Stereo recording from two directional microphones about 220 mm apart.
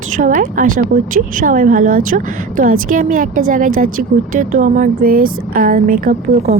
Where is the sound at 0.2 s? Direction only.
35° right (ahead or behind).